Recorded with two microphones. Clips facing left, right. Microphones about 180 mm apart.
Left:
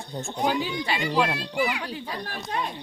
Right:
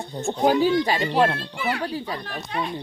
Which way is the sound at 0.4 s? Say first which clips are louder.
Right 8 dB; 40° right (ahead or behind).